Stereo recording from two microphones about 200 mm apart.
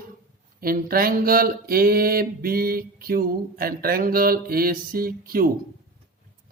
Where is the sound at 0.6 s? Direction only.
45° right (ahead or behind).